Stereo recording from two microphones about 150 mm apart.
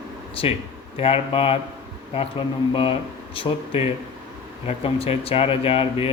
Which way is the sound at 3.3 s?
40° left (ahead or behind).